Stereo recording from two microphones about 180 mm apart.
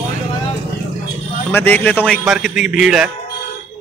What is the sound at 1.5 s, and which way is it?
Speech, 10° left (ahead or behind).